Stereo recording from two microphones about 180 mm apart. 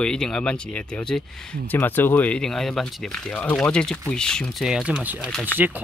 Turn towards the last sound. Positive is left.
turn(degrees=-5)  # may be behind; listen again after turning